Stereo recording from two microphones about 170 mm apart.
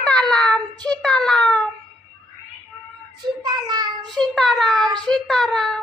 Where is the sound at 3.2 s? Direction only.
25° right (ahead or behind).